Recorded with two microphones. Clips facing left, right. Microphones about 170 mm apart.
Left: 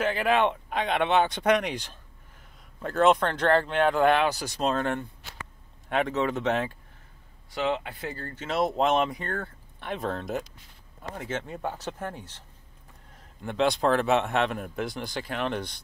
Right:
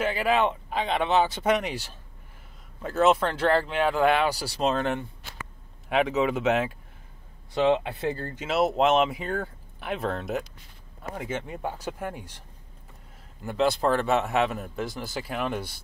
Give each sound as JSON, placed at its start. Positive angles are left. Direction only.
{"t": 0.0, "sound": "speech", "side_deg": -5}
{"t": 7.5, "sound": "speech", "side_deg": -25}
{"t": 8.5, "sound": "speech", "side_deg": -5}